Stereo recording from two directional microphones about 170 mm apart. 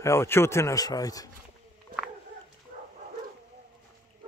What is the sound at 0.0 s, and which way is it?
Speech, 15° left (ahead or behind).